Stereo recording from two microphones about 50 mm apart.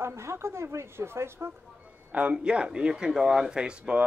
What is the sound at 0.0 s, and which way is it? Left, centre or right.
A woman's voice, right.